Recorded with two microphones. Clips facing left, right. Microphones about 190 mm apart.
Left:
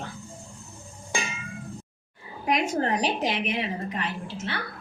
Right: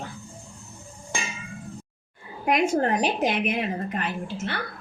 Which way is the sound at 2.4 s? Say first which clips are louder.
Right 3 dB; 55° right (ahead or behind).